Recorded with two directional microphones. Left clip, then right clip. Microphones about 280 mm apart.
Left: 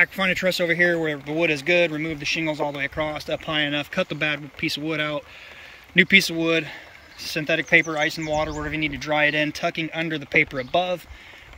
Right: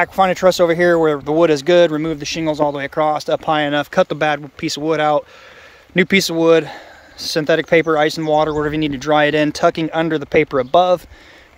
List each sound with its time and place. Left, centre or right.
0.1 s speech: centre